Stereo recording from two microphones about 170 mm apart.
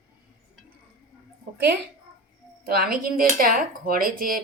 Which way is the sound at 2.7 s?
60° right (ahead or behind).